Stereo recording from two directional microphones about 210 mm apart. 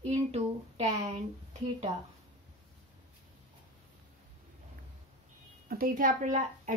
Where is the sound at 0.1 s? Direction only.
30° right (ahead or behind).